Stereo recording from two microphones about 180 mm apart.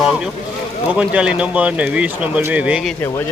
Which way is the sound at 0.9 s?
5° right (ahead or behind).